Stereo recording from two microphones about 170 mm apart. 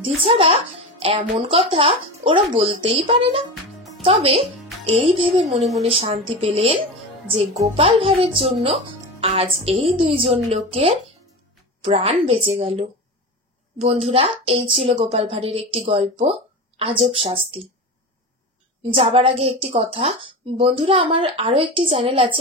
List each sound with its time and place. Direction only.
0.2 s speech: 35° right (ahead or behind)
13.8 s speech: 35° right (ahead or behind)
18.8 s speech: 30° right (ahead or behind)